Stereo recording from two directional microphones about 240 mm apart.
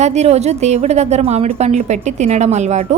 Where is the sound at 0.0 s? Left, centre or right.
Right.